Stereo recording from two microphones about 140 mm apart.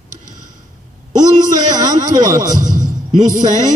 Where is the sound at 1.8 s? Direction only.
60° right (ahead or behind).